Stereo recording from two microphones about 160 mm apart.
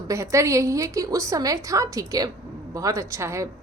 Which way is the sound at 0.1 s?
20° right (ahead or behind).